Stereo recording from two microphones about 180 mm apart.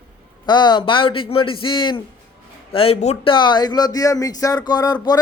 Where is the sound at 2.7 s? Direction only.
30° left (ahead or behind).